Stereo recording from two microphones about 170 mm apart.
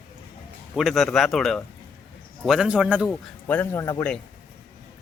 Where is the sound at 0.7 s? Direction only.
Centre (ahead or behind).